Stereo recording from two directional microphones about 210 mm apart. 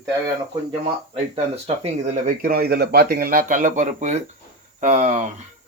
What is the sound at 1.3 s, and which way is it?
Speech, 30° right (ahead or behind).